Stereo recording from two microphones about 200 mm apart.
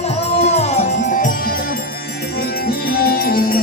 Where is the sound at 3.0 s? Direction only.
50° left (ahead or behind).